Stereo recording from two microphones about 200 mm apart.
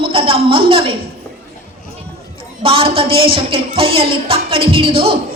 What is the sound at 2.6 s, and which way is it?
Speech, 25° right (ahead or behind).